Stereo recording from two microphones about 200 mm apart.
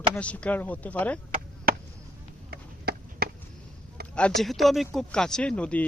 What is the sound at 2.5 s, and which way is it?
Chop, 50° right (ahead or behind).